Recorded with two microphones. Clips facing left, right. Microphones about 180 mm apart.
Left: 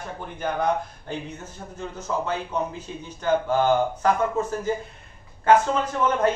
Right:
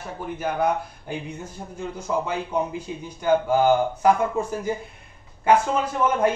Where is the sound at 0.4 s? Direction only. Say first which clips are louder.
Even; 10° right (ahead or behind).